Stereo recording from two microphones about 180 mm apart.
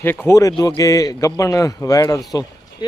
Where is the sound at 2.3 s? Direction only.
20° left (ahead or behind).